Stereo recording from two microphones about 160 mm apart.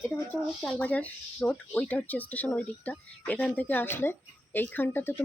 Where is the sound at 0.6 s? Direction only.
10° left (ahead or behind).